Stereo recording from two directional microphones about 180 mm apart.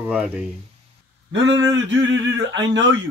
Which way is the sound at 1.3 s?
90° right.